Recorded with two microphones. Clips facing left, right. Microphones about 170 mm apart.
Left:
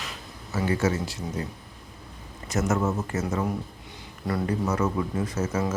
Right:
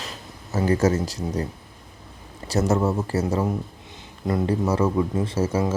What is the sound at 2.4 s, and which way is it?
A man's voice, 35° right (ahead or behind).